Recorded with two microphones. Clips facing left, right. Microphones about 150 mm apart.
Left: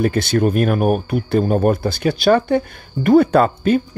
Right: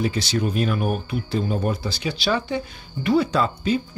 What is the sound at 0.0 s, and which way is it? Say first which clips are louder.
Speech: left 7 dB; 55° left (ahead or behind).